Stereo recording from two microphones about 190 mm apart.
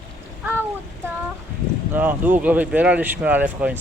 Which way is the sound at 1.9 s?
10° right (ahead or behind).